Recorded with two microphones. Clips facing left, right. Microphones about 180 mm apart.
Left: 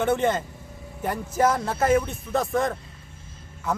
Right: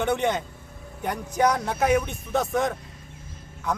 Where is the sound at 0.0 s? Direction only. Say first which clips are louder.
Left 2 dB; centre (ahead or behind).